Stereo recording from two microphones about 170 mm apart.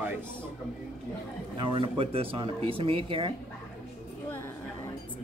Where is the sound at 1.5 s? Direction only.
30° right (ahead or behind).